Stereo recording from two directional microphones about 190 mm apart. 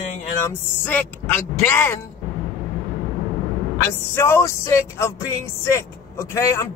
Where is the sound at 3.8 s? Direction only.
15° left (ahead or behind).